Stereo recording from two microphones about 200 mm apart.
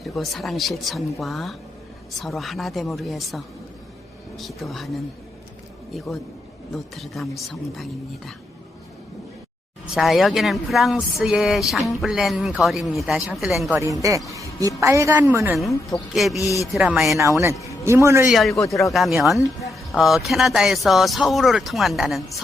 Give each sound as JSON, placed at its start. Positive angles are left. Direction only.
{"t": 0.0, "sound": "speech", "side_deg": 0}
{"t": 6.9, "sound": "speech", "side_deg": 0}
{"t": 9.9, "sound": "speech", "side_deg": 0}
{"t": 13.7, "sound": "a woman's voice", "side_deg": -15}
{"t": 14.3, "sound": "a sound", "side_deg": -15}
{"t": 14.8, "sound": "a woman's voice", "side_deg": -15}
{"t": 15.9, "sound": "speech", "side_deg": 0}
{"t": 16.4, "sound": "speech", "side_deg": 15}
{"t": 16.7, "sound": "speech", "side_deg": -5}
{"t": 17.8, "sound": "a woman's voice", "side_deg": -15}
{"t": 18.3, "sound": "speech", "side_deg": 0}
{"t": 18.5, "sound": "speech", "side_deg": 15}
{"t": 18.8, "sound": "speech", "side_deg": 0}